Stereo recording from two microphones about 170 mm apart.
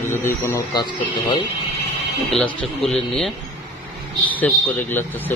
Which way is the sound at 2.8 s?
Centre (ahead or behind).